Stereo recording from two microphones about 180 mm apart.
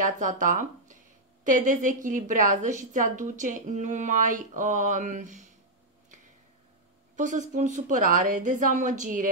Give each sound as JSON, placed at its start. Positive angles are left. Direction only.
{"t": 0.0, "sound": "a woman's voice", "side_deg": -45}
{"t": 7.2, "sound": "a woman's voice", "side_deg": -45}